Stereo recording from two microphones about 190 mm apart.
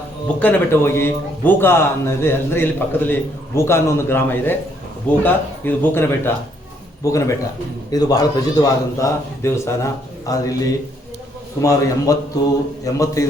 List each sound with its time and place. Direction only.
0.3 s a man's voice: 10° left (ahead or behind)
11.6 s a man's voice: 15° left (ahead or behind)